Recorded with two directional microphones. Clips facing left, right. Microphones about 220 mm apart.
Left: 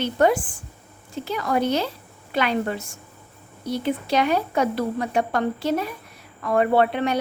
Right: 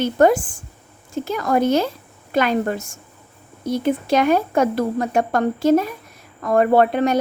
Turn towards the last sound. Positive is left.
turn(degrees=-45)  # may be behind; listen again after turning